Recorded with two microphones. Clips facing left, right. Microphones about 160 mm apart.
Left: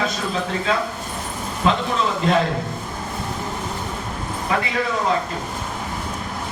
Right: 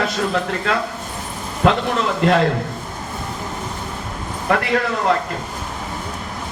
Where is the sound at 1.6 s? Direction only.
65° right (ahead or behind).